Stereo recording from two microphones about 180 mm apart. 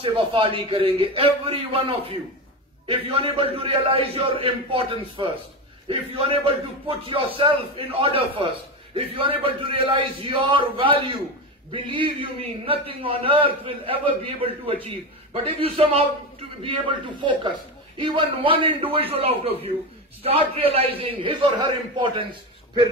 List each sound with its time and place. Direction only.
0.0 s a man's voice: 30° right (ahead or behind)
17.2 s a man's voice: 25° right (ahead or behind)